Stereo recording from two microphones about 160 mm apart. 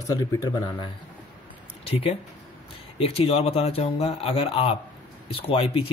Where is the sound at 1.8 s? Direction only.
35° left (ahead or behind).